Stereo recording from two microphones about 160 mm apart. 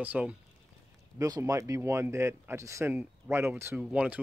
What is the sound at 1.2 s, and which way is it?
Speech, 20° right (ahead or behind).